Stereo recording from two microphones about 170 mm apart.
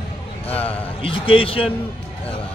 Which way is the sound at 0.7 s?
30° left (ahead or behind).